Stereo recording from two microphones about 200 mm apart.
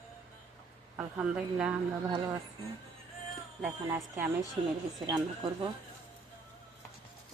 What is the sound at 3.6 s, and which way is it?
Speech, 15° right (ahead or behind).